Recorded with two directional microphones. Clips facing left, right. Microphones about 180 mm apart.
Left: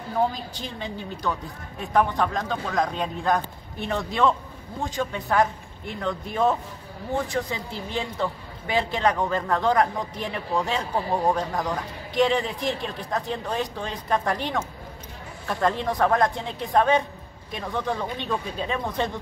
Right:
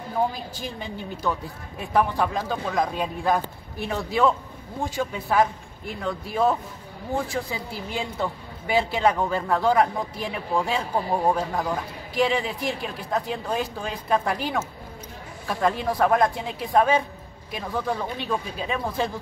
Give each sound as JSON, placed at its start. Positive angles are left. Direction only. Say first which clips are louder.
{"t": 2.0, "sound": "speech", "louder": "even", "side_deg": -5}